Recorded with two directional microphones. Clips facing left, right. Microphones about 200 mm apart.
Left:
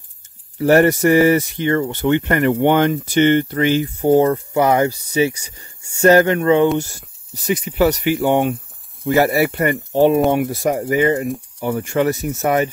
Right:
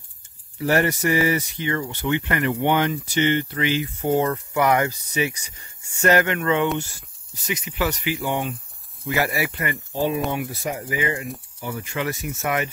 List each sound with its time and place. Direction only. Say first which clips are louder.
0.6 s speech: left 8 dB; 50° left (ahead or behind)
8.0 s speech: left 9 dB; 60° left (ahead or behind)
9.0 s speech: left 9 dB; 45° left (ahead or behind)
9.9 s speech: left 10 dB; 60° left (ahead or behind); by 12.6 s 40° left (ahead or behind)